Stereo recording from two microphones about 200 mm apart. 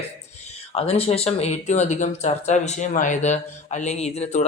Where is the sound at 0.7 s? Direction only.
30° left (ahead or behind).